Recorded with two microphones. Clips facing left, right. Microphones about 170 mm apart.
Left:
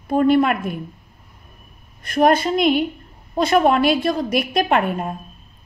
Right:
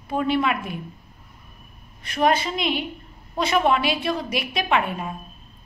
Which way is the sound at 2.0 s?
50° left (ahead or behind).